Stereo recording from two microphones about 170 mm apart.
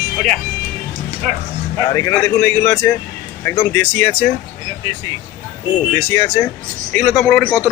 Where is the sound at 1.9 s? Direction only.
15° left (ahead or behind).